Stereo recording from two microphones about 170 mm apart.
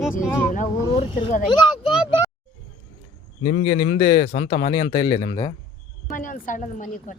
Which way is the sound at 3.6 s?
35° left (ahead or behind).